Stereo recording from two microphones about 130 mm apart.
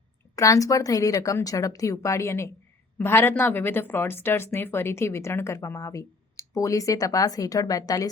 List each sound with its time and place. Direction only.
0.3 s speech: 25° left (ahead or behind)